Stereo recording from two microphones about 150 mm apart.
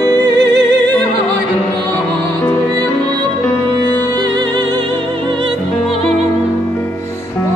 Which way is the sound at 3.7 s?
30° right (ahead or behind).